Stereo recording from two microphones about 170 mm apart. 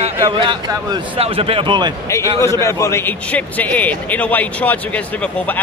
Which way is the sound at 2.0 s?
15° left (ahead or behind).